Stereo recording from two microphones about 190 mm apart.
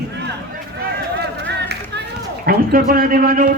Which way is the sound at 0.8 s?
60° right (ahead or behind).